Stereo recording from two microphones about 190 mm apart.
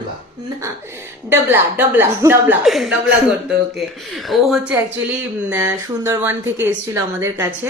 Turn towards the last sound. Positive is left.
turn(degrees=-15)  # may be behind; listen again after turning